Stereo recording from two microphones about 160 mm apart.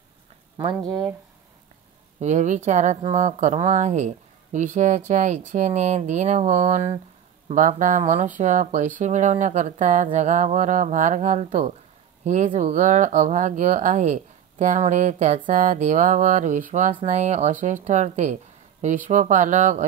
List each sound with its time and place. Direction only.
0.8 s speech: 25° right (ahead or behind)
2.1 s speech: 45° right (ahead or behind)